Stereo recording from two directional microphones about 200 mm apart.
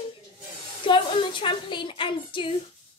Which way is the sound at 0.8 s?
25° left (ahead or behind).